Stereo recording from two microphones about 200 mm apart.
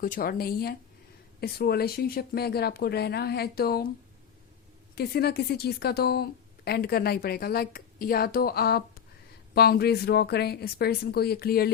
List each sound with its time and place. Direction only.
0.0 s a woman's voice: 45° left (ahead or behind)
4.9 s a woman's voice: 50° left (ahead or behind)